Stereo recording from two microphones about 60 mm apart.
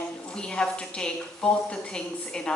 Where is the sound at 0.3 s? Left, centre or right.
Centre.